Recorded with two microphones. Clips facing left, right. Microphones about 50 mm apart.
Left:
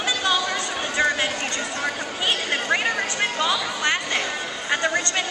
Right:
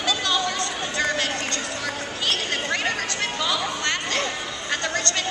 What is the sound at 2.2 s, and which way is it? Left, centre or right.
Chatter, centre.